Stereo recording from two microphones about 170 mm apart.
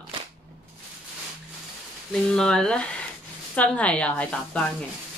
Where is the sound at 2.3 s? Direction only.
5° left (ahead or behind).